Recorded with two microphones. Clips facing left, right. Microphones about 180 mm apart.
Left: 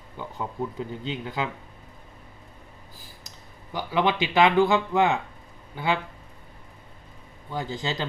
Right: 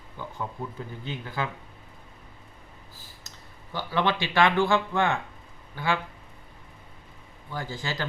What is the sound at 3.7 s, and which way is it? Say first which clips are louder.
Speech: left 2 dB; 15° left (ahead or behind).